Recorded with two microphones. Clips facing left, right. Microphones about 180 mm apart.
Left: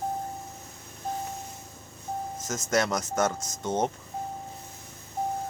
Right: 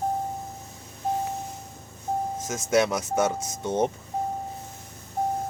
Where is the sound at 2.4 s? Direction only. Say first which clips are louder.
Right 3 dB; 5° right (ahead or behind).